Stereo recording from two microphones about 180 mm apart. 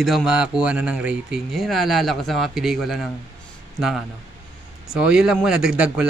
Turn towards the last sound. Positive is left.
turn(degrees=-5)  # may be behind; listen again after turning